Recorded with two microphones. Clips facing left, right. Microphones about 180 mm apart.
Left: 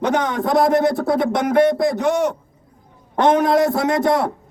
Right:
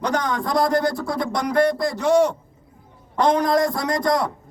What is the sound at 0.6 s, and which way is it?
Speech, 25° left (ahead or behind).